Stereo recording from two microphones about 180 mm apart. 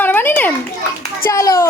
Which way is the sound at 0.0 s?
10° left (ahead or behind).